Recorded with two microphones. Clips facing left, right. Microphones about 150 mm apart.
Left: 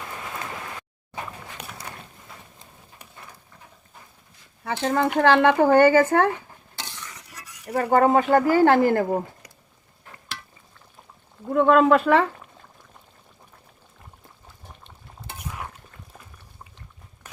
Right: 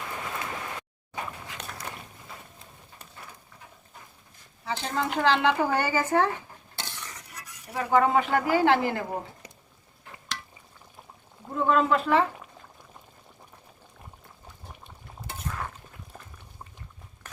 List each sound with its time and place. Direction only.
4.6 s speech: 55° left (ahead or behind)
7.7 s speech: 50° left (ahead or behind)
11.5 s speech: 65° left (ahead or behind)
15.4 s a sound: 10° left (ahead or behind)